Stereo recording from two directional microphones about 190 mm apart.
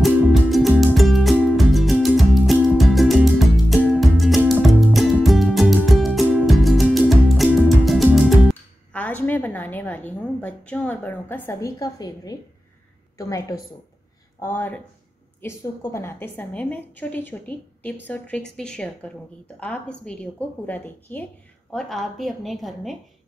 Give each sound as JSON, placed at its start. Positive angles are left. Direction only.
{"t": 0.0, "sound": "music", "side_deg": 0}
{"t": 8.9, "sound": "a sound", "side_deg": 10}
{"t": 13.2, "sound": "a woman's voice", "side_deg": 15}